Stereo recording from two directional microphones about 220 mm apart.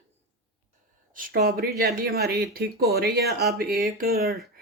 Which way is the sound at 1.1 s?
40° right (ahead or behind).